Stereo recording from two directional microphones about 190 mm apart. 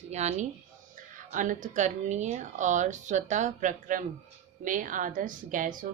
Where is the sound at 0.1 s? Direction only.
35° right (ahead or behind).